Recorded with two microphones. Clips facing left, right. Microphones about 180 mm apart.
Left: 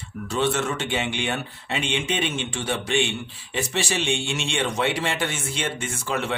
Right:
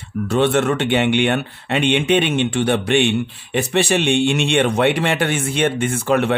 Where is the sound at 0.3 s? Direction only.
60° right (ahead or behind).